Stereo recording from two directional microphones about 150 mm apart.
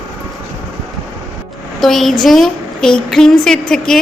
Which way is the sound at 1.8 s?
Centre (ahead or behind).